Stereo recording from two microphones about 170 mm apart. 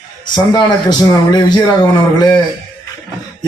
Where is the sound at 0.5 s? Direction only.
25° left (ahead or behind).